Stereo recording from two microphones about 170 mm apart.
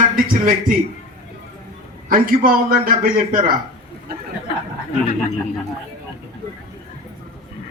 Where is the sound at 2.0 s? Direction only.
55° right (ahead or behind).